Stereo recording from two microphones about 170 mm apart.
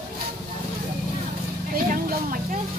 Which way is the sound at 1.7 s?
55° right (ahead or behind).